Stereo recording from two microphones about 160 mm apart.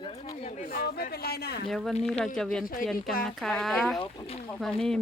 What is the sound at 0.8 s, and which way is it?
Speech, 75° left (ahead or behind).